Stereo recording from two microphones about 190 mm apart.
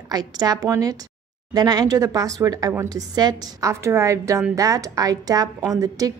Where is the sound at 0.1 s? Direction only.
20° right (ahead or behind).